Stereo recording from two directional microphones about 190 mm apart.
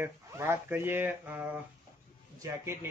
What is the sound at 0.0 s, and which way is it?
Speech, 10° right (ahead or behind).